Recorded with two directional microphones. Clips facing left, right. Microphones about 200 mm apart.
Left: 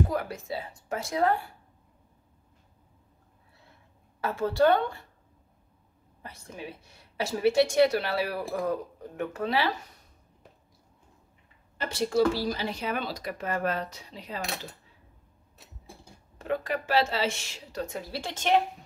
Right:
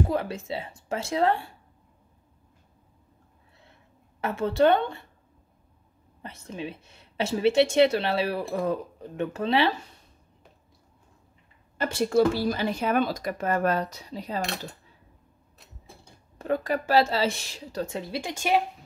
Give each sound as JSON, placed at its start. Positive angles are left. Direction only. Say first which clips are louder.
{"t": 0.1, "sound": "a woman's voice", "louder": "right 3 dB", "side_deg": -25}
{"t": 4.2, "sound": "a woman's voice", "louder": "right 2 dB", "side_deg": -25}
{"t": 6.2, "sound": "a woman's voice", "louder": "right 5 dB", "side_deg": -25}
{"t": 11.8, "sound": "speech", "louder": "right 3 dB", "side_deg": -50}
{"t": 16.4, "sound": "a woman's voice", "louder": "right 3 dB", "side_deg": -35}
{"t": 18.2, "sound": "speech", "louder": "even", "side_deg": -10}